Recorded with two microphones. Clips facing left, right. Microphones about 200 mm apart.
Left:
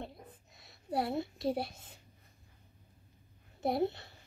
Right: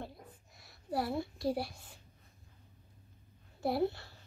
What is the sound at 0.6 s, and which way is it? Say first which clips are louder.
Speech: left 1 dB; 20° left (ahead or behind).